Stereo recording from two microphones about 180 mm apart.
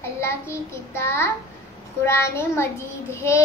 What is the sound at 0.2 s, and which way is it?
A child's voice, 15° left (ahead or behind).